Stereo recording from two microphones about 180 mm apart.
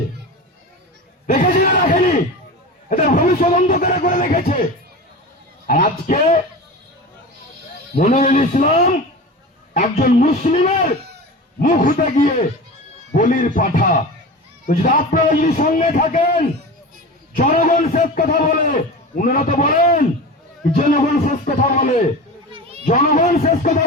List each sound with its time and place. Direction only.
1.3 s speech: 45° left (ahead or behind)
1.9 s a sound: 45° left (ahead or behind)
2.9 s a man's voice: 50° left (ahead or behind)
5.6 s a man's voice: 50° left (ahead or behind)
8.0 s a man's voice: 45° left (ahead or behind)
11.6 s a man's voice: 50° left (ahead or behind)
22.9 s a man's voice: 50° left (ahead or behind)